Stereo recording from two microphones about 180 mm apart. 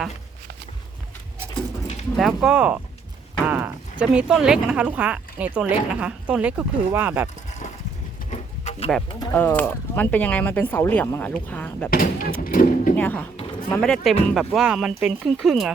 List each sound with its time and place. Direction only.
2.1 s speech: centre (ahead or behind)
8.3 s a sound: 40° left (ahead or behind)
9.3 s speech: 10° left (ahead or behind)
11.9 s speech: 50° left (ahead or behind)
13.0 s speech: 10° left (ahead or behind)